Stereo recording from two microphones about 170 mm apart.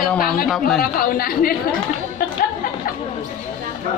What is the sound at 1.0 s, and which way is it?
Speech, 60° left (ahead or behind).